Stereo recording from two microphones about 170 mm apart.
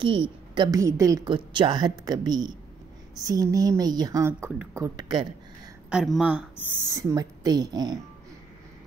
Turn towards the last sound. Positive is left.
turn(degrees=-20)  # may be behind; listen again after turning